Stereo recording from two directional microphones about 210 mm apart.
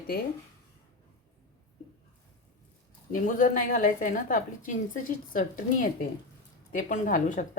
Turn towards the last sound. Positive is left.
turn(degrees=40)  # may be behind; listen again after turning